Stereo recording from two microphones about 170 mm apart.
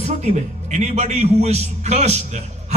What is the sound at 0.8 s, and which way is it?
A man's voice, 40° right (ahead or behind).